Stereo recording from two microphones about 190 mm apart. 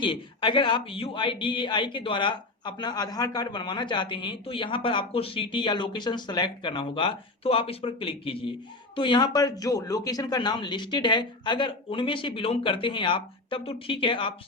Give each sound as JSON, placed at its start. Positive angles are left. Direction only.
{"t": 0.0, "sound": "a man's voice", "side_deg": 25}